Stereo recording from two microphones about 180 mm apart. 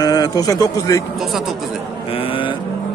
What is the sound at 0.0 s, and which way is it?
A man's voice, 20° left (ahead or behind).